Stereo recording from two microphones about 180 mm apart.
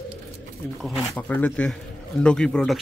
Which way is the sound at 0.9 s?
10° left (ahead or behind).